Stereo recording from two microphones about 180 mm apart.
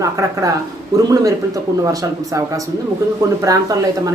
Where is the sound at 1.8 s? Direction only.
20° right (ahead or behind).